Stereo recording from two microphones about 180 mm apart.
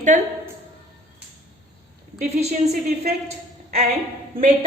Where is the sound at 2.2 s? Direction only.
35° right (ahead or behind).